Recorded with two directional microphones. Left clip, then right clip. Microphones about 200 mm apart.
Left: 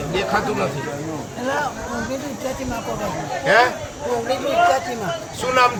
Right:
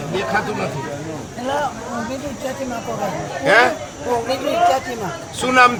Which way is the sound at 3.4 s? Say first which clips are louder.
Right 2 dB; 40° right (ahead or behind).